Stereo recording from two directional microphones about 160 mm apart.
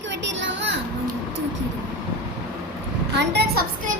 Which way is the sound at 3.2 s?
90° right.